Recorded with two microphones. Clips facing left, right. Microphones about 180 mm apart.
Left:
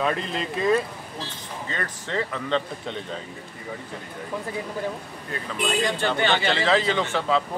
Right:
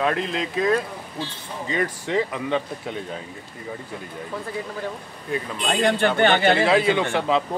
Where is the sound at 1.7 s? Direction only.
15° right (ahead or behind).